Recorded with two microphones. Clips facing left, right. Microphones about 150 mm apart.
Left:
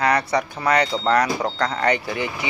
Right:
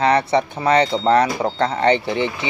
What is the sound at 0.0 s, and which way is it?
Speech, 25° right (ahead or behind).